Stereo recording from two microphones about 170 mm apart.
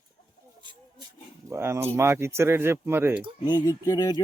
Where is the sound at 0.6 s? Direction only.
25° right (ahead or behind).